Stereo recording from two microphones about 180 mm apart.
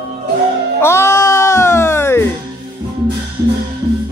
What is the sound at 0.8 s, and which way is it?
Music, 15° left (ahead or behind).